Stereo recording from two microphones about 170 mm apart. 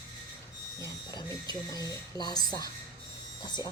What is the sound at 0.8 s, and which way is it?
Speech, 25° left (ahead or behind).